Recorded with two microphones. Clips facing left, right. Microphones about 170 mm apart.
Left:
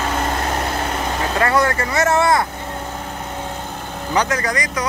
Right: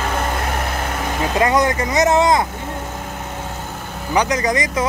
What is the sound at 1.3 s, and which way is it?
Vehicle, 15° right (ahead or behind).